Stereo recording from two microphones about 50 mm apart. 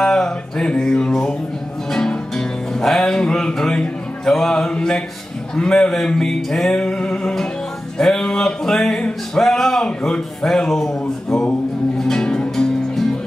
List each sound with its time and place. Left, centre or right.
0.0 s music: centre
6.7 s music: left
9.3 s a man's voice: centre
12.0 s music: centre